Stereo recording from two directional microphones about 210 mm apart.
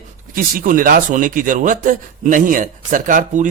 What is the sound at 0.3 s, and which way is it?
A man's voice, 40° right (ahead or behind).